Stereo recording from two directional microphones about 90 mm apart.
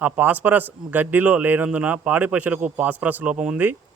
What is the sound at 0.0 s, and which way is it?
A man's voice, 20° right (ahead or behind).